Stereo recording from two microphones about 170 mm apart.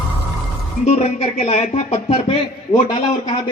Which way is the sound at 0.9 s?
35° left (ahead or behind).